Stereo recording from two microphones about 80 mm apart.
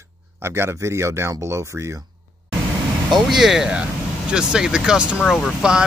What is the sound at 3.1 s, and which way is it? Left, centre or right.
Speech, centre.